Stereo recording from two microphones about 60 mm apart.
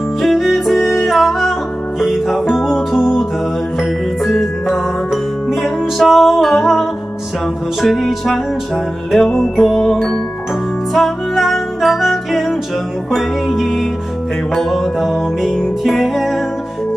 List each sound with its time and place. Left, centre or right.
0.2 s music: centre